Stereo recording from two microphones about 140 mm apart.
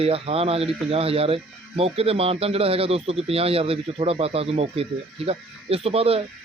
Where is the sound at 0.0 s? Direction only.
45° right (ahead or behind).